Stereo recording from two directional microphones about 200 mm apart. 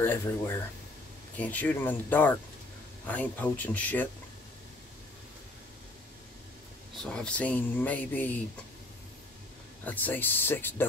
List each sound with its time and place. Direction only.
0.0 s speech: 10° left (ahead or behind)
7.1 s speech: 5° left (ahead or behind)
9.8 s speech: 10° left (ahead or behind)